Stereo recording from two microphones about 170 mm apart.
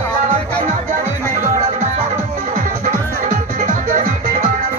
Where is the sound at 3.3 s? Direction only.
50° right (ahead or behind).